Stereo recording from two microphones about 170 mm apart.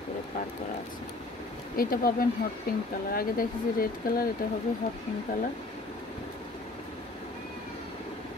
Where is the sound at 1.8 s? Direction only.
60° left (ahead or behind).